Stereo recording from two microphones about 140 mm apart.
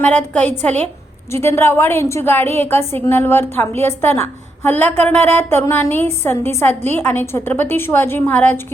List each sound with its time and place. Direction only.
0.0 s a woman's voice: 10° left (ahead or behind)